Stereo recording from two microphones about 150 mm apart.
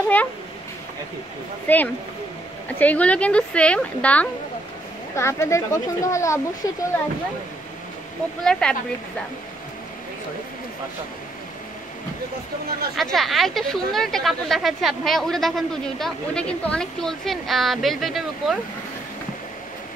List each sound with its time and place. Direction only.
1.7 s a woman's voice: 10° left (ahead or behind)
8.5 s speech: 5° left (ahead or behind)
12.9 s speech: centre (ahead or behind)